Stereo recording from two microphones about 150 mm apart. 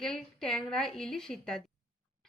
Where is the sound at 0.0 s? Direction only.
5° left (ahead or behind).